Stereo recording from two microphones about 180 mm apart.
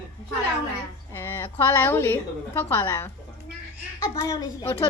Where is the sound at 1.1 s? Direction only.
15° left (ahead or behind).